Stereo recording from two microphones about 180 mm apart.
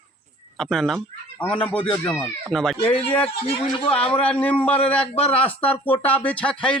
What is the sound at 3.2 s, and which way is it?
Speech, 30° left (ahead or behind).